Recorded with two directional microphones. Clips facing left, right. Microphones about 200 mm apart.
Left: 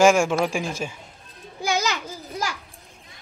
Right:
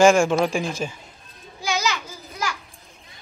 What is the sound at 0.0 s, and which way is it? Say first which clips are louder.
Speech: right 2 dB; 5° left (ahead or behind).